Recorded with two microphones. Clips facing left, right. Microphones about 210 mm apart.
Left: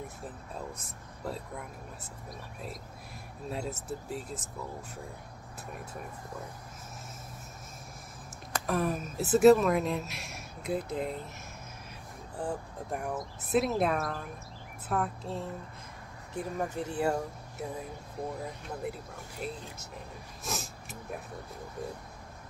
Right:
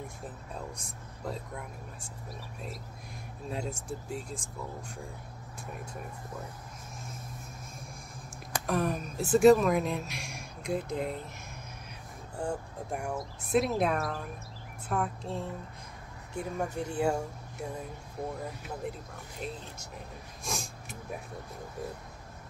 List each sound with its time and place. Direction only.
0.7 s speech: 5° left (ahead or behind)
3.4 s speech: centre (ahead or behind)
8.6 s speech: centre (ahead or behind)
12.4 s speech: centre (ahead or behind)
19.4 s speech: 5° left (ahead or behind)
20.4 s a sound: 5° left (ahead or behind)